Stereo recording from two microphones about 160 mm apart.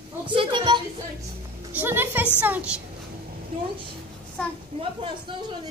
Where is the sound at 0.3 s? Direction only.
30° right (ahead or behind).